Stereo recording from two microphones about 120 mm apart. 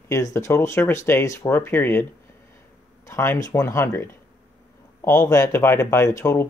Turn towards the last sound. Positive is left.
turn(degrees=25)  # may be behind; listen again after turning